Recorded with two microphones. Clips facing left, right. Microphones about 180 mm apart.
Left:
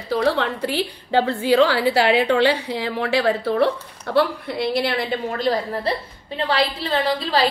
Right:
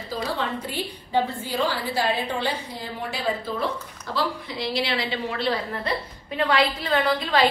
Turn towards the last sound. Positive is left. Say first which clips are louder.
# left 1 dB
turn(degrees=35)  # may be behind; listen again after turning